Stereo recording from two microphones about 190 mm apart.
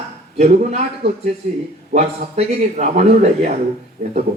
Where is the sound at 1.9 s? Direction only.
40° right (ahead or behind).